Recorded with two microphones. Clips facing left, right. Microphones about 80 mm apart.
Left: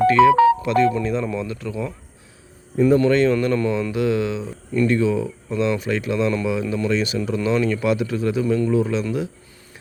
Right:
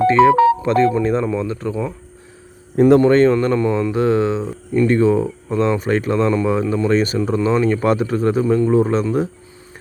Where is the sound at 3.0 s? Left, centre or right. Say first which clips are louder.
Right 4 dB; right.